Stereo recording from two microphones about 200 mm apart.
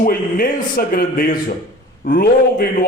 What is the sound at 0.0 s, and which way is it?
Speech, 45° left (ahead or behind).